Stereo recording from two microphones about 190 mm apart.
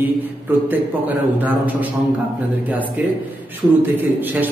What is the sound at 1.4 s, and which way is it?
A man's voice, 10° right (ahead or behind).